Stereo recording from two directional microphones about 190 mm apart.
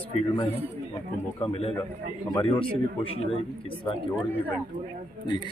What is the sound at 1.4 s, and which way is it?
Speech, 30° left (ahead or behind).